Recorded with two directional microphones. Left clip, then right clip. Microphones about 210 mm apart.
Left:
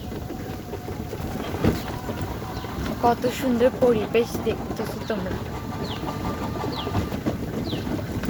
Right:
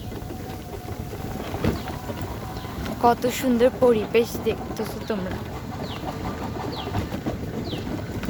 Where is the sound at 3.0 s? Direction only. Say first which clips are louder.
Right 2 dB; 20° right (ahead or behind).